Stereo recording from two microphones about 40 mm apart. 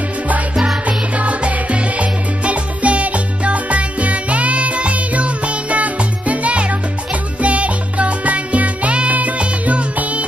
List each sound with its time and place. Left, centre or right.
0.8 s music: right